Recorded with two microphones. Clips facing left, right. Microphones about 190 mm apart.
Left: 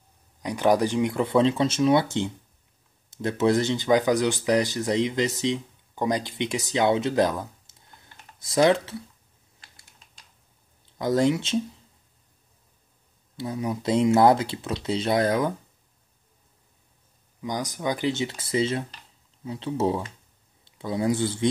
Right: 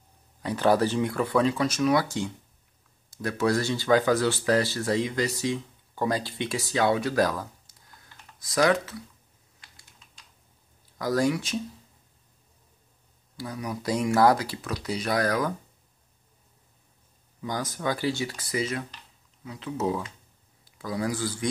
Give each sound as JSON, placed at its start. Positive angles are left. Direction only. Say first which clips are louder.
{"t": 0.4, "sound": "speech", "louder": "left 1 dB", "side_deg": 15}
{"t": 11.0, "sound": "speech", "louder": "left 3 dB", "side_deg": 25}
{"t": 13.4, "sound": "speech", "louder": "left 5 dB", "side_deg": 25}
{"t": 17.4, "sound": "speech", "louder": "left 2 dB", "side_deg": 15}